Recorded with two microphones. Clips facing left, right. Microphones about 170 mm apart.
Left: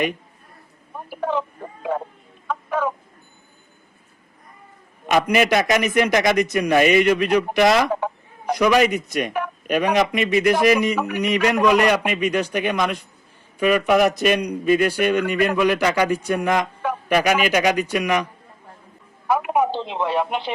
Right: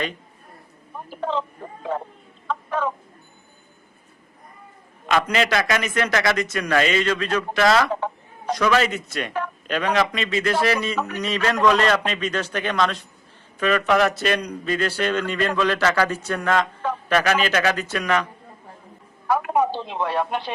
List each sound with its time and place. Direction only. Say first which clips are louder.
0.9 s a sound: left 2 dB; 10° left (ahead or behind)
2.5 s chicken: left 2 dB; 10° left (ahead or behind)
5.0 s a man's voice: left 3 dB; 15° left (ahead or behind)
19.7 s speech: left 2 dB; 25° left (ahead or behind)